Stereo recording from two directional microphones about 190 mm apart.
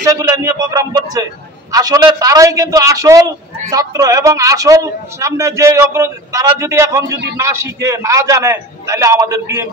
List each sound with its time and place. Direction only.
0.0 s music: 15° right (ahead or behind)
1.7 s a man's voice: 20° right (ahead or behind)